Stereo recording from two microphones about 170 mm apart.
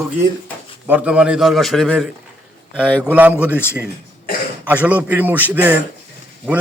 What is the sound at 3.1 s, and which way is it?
A man's voice, 10° right (ahead or behind).